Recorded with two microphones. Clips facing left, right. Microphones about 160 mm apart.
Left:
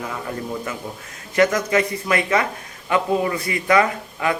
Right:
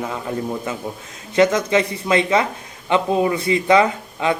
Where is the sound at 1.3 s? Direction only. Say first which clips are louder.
Right 2 dB; 20° right (ahead or behind).